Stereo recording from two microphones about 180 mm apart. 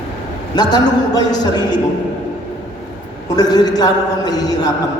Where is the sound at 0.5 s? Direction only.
25° left (ahead or behind).